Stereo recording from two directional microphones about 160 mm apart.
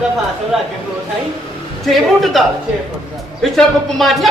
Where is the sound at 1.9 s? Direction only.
Centre (ahead or behind).